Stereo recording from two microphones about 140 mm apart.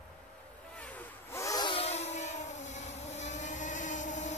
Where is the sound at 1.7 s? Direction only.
50° left (ahead or behind).